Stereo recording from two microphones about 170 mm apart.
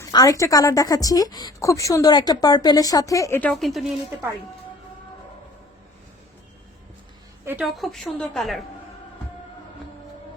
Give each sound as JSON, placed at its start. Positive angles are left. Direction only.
{"t": 0.0, "sound": "a woman's voice", "side_deg": 20}
{"t": 3.5, "sound": "a woman's voice", "side_deg": 0}
{"t": 7.4, "sound": "a woman's voice", "side_deg": -5}